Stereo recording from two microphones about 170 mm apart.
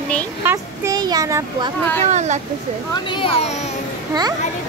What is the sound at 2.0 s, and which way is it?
Speech, 45° right (ahead or behind).